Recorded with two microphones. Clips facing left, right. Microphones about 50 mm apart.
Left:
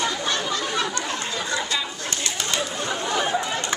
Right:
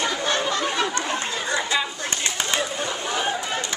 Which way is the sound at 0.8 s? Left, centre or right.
Right.